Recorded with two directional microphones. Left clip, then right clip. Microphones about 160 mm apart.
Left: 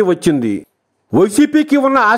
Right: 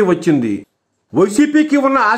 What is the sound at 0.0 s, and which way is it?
A man's voice, 50° left (ahead or behind).